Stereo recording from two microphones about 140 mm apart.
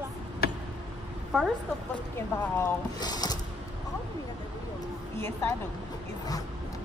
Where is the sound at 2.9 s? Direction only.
30° left (ahead or behind).